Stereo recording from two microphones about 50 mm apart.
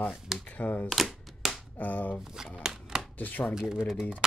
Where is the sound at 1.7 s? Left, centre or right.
Left.